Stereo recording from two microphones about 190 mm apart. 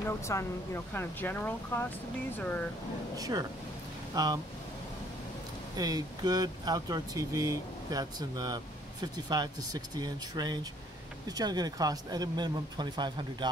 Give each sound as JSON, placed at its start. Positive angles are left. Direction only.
{"t": 0.0, "sound": "speech", "side_deg": 15}
{"t": 3.2, "sound": "speech", "side_deg": -20}
{"t": 5.8, "sound": "speech", "side_deg": -20}